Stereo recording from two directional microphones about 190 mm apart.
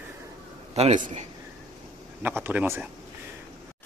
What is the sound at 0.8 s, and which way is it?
Speech, 40° right (ahead or behind).